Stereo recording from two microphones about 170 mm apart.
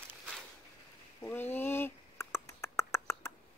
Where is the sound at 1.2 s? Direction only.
10° left (ahead or behind).